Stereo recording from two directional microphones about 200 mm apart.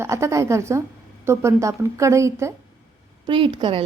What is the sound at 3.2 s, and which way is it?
Speech, 25° right (ahead or behind).